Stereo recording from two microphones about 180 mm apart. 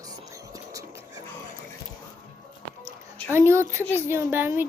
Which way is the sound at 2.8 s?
15° right (ahead or behind).